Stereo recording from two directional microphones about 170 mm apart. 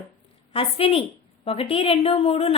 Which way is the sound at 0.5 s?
35° left (ahead or behind).